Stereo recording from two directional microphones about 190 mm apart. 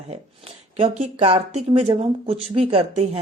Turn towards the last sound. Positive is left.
turn(degrees=-30)  # may be behind; listen again after turning